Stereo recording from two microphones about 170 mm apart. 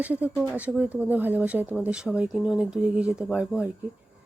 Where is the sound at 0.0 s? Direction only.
10° right (ahead or behind).